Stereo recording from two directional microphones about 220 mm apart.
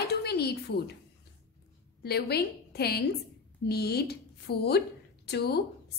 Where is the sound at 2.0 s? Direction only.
45° left (ahead or behind).